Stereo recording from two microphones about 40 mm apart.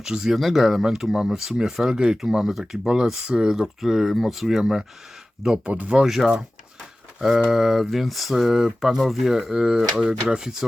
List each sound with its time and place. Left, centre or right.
0.0 s speech: centre
0.3 s speech: centre
5.6 s speech: right
6.0 s speech: centre